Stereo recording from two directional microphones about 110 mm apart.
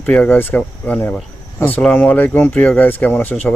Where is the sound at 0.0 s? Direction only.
10° left (ahead or behind).